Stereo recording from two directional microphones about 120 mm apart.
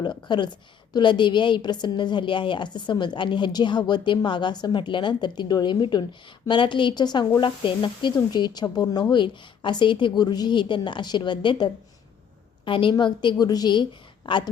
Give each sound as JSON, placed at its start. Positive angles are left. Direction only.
{"t": 0.0, "sound": "a woman's voice", "side_deg": 40}